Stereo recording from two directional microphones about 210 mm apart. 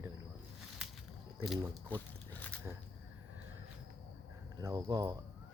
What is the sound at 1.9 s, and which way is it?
Speech, 10° left (ahead or behind).